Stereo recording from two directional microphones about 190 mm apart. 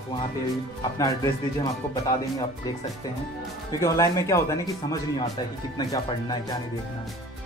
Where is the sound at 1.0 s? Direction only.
20° left (ahead or behind).